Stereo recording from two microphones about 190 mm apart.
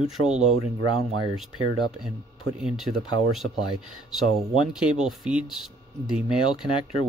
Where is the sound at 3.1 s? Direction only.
90° right.